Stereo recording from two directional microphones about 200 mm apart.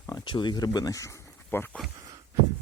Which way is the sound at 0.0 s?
20° left (ahead or behind).